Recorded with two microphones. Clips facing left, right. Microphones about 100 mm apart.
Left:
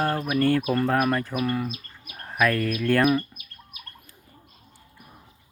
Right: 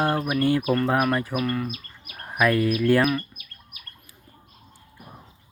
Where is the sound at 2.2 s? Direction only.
15° right (ahead or behind).